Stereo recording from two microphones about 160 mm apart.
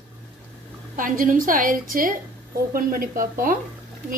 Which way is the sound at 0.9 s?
55° right (ahead or behind).